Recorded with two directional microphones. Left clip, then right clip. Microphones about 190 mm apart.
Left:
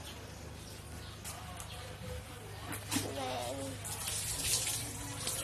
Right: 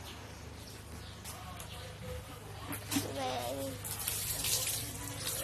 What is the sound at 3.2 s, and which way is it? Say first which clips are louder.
Music: right 2 dB; 20° right (ahead or behind).